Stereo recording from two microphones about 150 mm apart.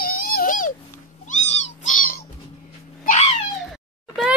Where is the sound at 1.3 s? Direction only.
55° left (ahead or behind).